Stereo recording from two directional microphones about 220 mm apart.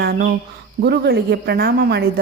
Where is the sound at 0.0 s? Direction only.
45° right (ahead or behind).